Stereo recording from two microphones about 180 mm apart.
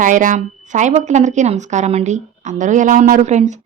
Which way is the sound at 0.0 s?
45° right (ahead or behind).